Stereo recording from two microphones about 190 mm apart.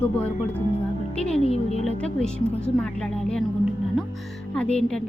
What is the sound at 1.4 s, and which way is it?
Speech, 35° left (ahead or behind).